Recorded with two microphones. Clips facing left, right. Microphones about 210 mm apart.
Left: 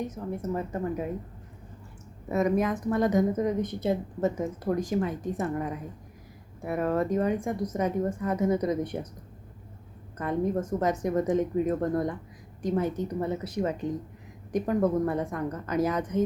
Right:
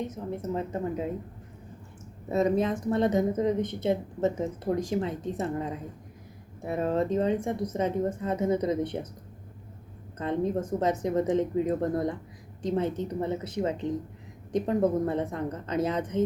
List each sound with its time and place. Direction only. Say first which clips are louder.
0.0 s a woman's voice: even; 25° right (ahead or behind)
2.3 s a woman's voice: even; 25° right (ahead or behind)
10.2 s a woman's voice: even; 25° right (ahead or behind)